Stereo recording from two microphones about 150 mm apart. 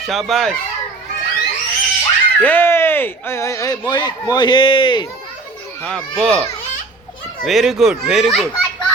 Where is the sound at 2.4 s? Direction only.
15° left (ahead or behind); by 5.1 s 35° left (ahead or behind).